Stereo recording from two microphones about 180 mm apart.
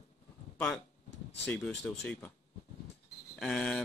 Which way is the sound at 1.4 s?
10° left (ahead or behind).